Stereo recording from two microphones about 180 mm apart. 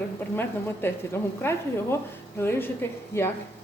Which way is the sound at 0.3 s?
15° left (ahead or behind).